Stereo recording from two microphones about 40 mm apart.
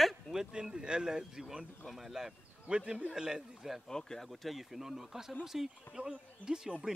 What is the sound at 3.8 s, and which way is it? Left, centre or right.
Speech, centre.